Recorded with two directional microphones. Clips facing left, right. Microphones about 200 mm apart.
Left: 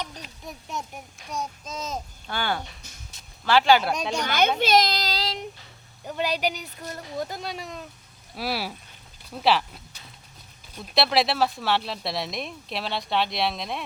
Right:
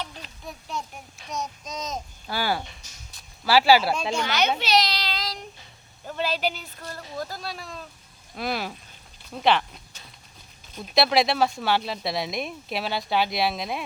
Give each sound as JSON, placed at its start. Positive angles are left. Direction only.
{"t": 1.3, "sound": "speech", "side_deg": 5}
{"t": 2.2, "sound": "speech", "side_deg": -5}
{"t": 4.1, "sound": "a child's voice", "side_deg": 45}
{"t": 5.2, "sound": "child singing", "side_deg": 25}
{"t": 6.1, "sound": "speech", "side_deg": 15}
{"t": 8.4, "sound": "speech", "side_deg": 5}
{"t": 10.8, "sound": "speech", "side_deg": 0}